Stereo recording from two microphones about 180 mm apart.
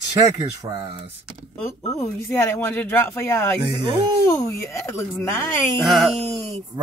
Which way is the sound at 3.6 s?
25° right (ahead or behind).